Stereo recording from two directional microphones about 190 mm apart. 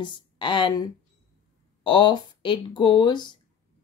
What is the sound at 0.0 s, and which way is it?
Speech, 25° left (ahead or behind).